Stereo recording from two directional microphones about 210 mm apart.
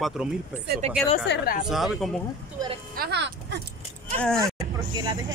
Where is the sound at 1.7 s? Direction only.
Centre (ahead or behind).